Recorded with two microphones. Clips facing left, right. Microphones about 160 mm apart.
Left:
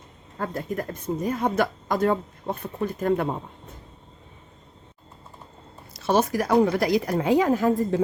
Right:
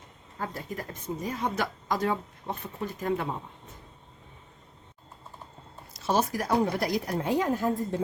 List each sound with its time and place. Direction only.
0.3 s a woman's voice: 55° left (ahead or behind)
5.9 s speech: 65° left (ahead or behind); by 8.0 s 90° left